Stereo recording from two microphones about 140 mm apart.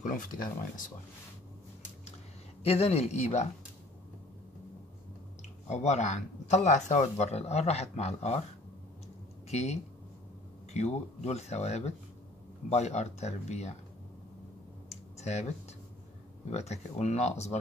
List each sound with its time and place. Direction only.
0.0 s speech: 70° left (ahead or behind)
2.6 s speech: 45° left (ahead or behind)
5.7 s speech: 55° left (ahead or behind)
9.5 s speech: 55° left (ahead or behind)
14.9 s clicking: 50° left (ahead or behind)
16.4 s speech: 50° left (ahead or behind)